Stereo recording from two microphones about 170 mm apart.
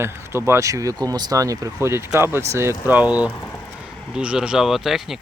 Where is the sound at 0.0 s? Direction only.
15° right (ahead or behind).